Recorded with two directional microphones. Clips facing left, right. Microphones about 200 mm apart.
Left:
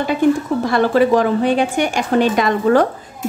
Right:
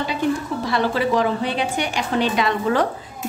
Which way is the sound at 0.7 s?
50° left (ahead or behind).